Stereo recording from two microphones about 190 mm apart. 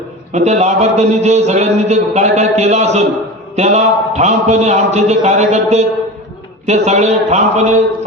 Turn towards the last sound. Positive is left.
turn(degrees=-35)  # may be behind; listen again after turning